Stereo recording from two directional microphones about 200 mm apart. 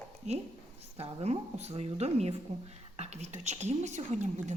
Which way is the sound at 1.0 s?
30° right (ahead or behind).